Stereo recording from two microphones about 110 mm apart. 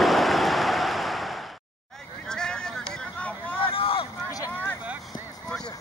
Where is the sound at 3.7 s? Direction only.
55° left (ahead or behind).